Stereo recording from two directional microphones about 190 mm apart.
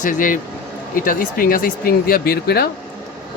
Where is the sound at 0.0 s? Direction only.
45° left (ahead or behind).